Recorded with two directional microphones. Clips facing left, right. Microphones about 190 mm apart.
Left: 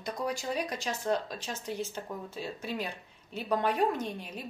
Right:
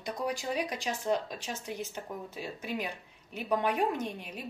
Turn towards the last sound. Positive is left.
turn(degrees=-15)  # may be behind; listen again after turning